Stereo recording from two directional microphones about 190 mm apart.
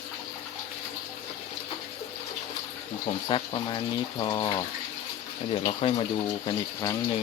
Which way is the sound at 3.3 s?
25° left (ahead or behind).